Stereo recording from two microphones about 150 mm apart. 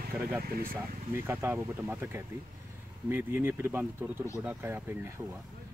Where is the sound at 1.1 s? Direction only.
15° right (ahead or behind).